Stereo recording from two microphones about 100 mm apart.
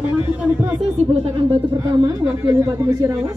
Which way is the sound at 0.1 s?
15° right (ahead or behind).